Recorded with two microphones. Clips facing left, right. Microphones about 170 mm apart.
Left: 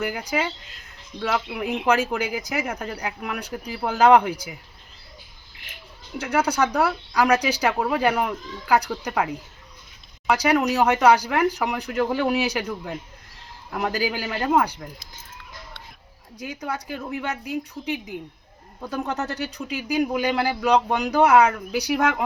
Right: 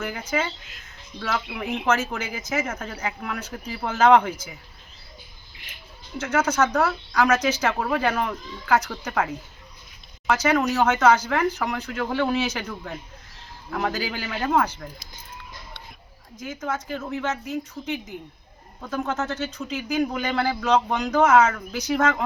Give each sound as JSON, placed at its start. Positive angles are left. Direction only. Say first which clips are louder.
{"t": 0.0, "sound": "speech", "louder": "left 1 dB", "side_deg": 10}
{"t": 6.1, "sound": "speech", "louder": "even", "side_deg": 15}
{"t": 16.4, "sound": "speech", "louder": "right 1 dB", "side_deg": 15}